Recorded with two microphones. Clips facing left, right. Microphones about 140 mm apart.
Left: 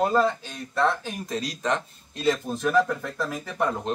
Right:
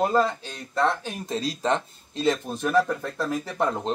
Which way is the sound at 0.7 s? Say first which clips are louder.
Even; 30° right (ahead or behind).